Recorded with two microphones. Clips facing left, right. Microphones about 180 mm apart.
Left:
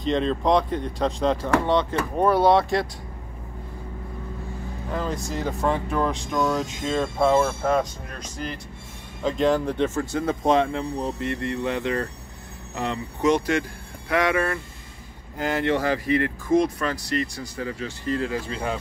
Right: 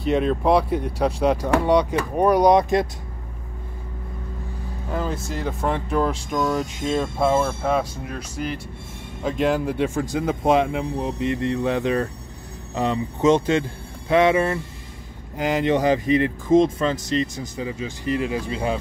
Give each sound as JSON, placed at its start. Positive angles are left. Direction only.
{"t": 0.0, "sound": "speech", "side_deg": -10}
{"t": 4.9, "sound": "speech", "side_deg": -5}
{"t": 5.9, "sound": "speech", "side_deg": -10}